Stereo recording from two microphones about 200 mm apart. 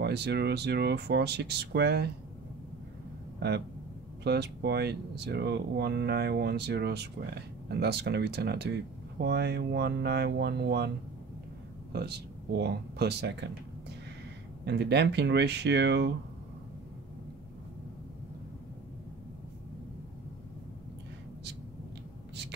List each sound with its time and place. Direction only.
0.0 s speech: 55° right (ahead or behind)
3.3 s speech: 55° right (ahead or behind)
11.9 s speech: 55° right (ahead or behind)
14.6 s speech: 55° right (ahead or behind)